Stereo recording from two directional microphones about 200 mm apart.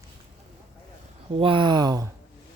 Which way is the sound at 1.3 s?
25° right (ahead or behind).